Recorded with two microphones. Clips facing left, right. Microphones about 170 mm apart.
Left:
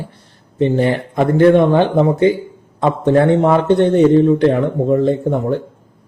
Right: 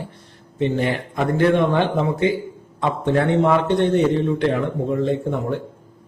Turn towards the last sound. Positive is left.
turn(degrees=40)  # may be behind; listen again after turning